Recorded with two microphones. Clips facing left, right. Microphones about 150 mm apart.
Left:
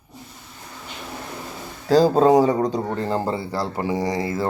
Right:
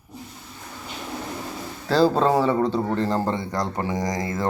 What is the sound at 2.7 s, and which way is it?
A man's voice, 10° left (ahead or behind).